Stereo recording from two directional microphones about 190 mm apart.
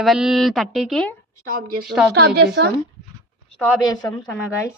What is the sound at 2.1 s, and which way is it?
Speech, 60° right (ahead or behind).